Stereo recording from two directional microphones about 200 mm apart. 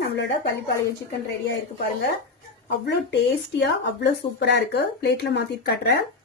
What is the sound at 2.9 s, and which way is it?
Speech, 60° left (ahead or behind).